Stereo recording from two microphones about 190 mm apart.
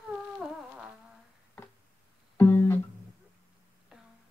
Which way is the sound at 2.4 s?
10° left (ahead or behind).